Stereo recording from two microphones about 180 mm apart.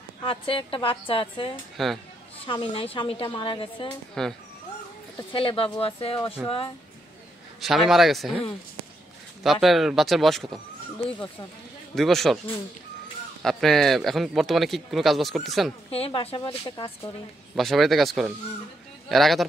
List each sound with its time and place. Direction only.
0.2 s a woman's voice: 30° left (ahead or behind)
1.8 s speech: centre (ahead or behind)
2.4 s a woman's voice: 30° left (ahead or behind)
4.1 s speech: centre (ahead or behind)
5.3 s a woman's voice: 30° left (ahead or behind)
7.6 s speech: centre (ahead or behind)
11.9 s speech: centre (ahead or behind)
13.4 s speech: centre (ahead or behind)
15.9 s a woman's voice: 30° left (ahead or behind)
17.6 s speech: centre (ahead or behind)